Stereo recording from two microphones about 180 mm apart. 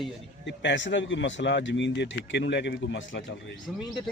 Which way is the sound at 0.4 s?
80° left.